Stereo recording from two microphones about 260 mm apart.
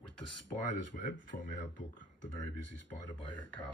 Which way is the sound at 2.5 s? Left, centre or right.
Left.